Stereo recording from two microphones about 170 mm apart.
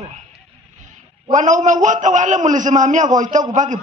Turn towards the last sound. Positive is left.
turn(degrees=-45)  # may be behind; listen again after turning